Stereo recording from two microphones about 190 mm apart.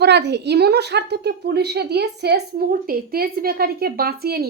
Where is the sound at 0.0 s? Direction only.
60° right (ahead or behind).